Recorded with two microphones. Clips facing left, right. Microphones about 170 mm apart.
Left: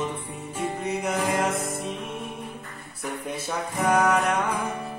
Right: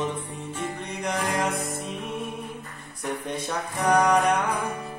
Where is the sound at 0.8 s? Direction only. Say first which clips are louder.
Left 3 dB; 5° left (ahead or behind).